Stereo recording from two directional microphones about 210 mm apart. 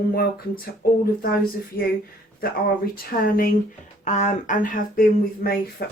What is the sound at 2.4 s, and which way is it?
Speech, 45° left (ahead or behind).